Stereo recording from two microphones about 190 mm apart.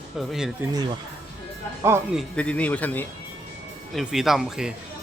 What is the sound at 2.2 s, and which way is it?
Speech, 5° left (ahead or behind).